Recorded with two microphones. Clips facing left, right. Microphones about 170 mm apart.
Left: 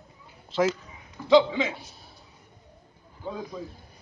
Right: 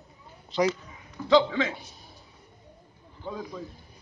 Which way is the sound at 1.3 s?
15° left (ahead or behind).